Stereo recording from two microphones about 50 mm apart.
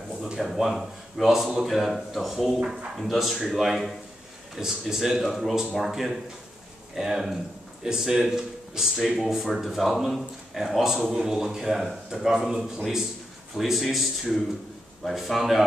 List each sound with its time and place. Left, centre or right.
0.2 s a man's voice: centre
13.6 s speech: centre
15.0 s speech: centre